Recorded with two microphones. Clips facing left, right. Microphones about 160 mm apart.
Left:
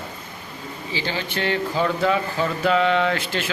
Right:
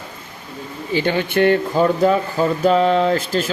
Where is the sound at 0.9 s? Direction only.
55° right (ahead or behind).